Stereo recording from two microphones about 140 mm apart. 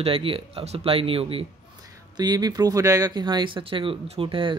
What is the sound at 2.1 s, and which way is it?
Speech, 30° right (ahead or behind).